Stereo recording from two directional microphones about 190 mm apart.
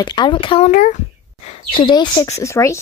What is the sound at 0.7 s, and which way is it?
Speech, 45° left (ahead or behind).